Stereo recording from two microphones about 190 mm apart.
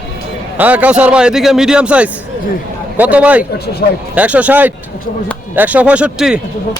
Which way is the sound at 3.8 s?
55° left (ahead or behind).